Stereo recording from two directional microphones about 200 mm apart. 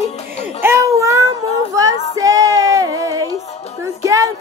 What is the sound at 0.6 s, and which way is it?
Baby cry, 15° right (ahead or behind).